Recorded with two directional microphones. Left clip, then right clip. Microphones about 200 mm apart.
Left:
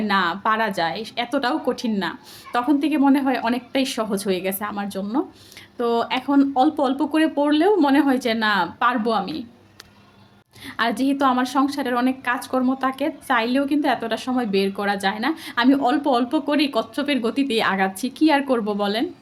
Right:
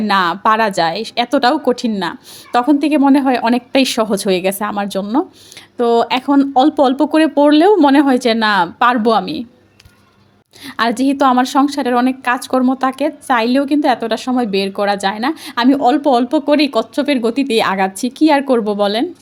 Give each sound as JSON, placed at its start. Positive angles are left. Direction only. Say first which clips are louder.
{"t": 0.0, "sound": "a woman's voice", "louder": "right 7 dB", "side_deg": -40}
{"t": 10.7, "sound": "a woman's voice", "louder": "right 6 dB", "side_deg": -40}